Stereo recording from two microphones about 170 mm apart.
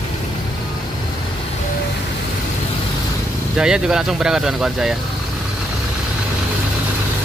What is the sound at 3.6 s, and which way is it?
Speech, 5° right (ahead or behind).